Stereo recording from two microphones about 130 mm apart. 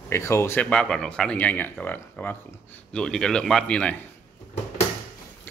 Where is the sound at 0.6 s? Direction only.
5° left (ahead or behind).